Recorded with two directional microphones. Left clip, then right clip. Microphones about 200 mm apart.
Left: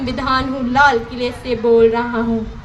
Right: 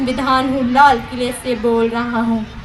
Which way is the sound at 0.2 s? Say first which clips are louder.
Right 2 dB; 40° right (ahead or behind).